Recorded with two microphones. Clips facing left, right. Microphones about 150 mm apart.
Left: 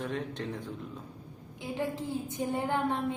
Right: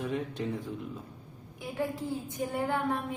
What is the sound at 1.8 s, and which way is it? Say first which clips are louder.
Speech: right 1 dB; 20° left (ahead or behind).